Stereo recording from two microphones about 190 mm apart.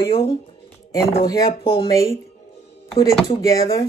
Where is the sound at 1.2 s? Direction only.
20° left (ahead or behind).